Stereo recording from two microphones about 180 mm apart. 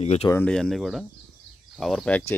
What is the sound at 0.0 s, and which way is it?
Speech, 35° left (ahead or behind).